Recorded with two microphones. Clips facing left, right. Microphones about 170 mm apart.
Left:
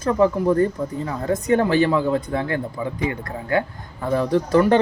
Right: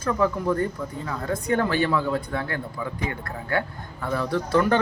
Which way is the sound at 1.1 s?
25° left (ahead or behind).